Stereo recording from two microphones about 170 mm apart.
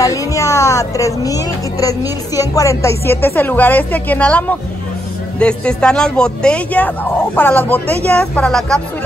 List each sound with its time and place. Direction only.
0.0 s speech: 20° left (ahead or behind); by 8.8 s 5° left (ahead or behind)